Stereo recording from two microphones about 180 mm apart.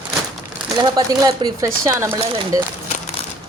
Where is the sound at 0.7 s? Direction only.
20° right (ahead or behind).